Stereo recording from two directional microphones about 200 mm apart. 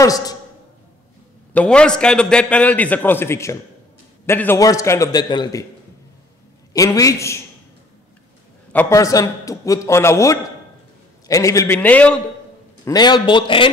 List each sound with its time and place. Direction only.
0.0 s a man's voice: 20° left (ahead or behind)
1.5 s a man's voice: 5° left (ahead or behind)
6.7 s a man's voice: 15° left (ahead or behind)
8.7 s a man's voice: 15° left (ahead or behind)
12.8 s a man's voice: 20° left (ahead or behind)